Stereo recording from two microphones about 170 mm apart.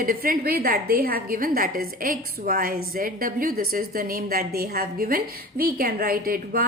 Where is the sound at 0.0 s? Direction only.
55° right (ahead or behind).